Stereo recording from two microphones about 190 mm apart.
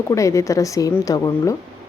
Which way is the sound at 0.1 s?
15° left (ahead or behind).